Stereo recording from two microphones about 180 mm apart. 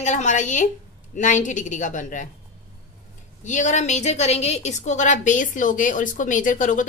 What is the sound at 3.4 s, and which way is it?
A woman's voice, 40° left (ahead or behind).